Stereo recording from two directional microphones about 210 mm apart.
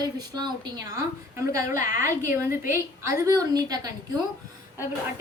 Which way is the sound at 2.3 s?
10° right (ahead or behind).